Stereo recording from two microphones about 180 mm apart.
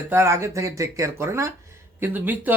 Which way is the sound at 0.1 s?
15° right (ahead or behind).